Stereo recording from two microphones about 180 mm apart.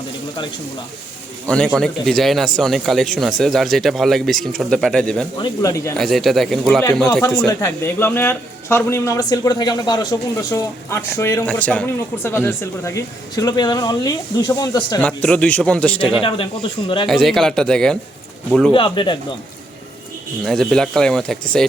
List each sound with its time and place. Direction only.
1.5 s speech: 5° left (ahead or behind)
5.4 s speech: 20° left (ahead or behind)
6.0 s speech: centre (ahead or behind)
7.4 s speech: 15° left (ahead or behind)
15.0 s speech: 5° left (ahead or behind)
16.2 s speech: 30° left (ahead or behind)
17.1 s speech: centre (ahead or behind)
18.7 s speech: 25° left (ahead or behind)
20.4 s speech: centre (ahead or behind)